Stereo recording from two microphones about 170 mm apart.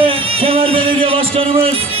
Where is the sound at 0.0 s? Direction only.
35° right (ahead or behind).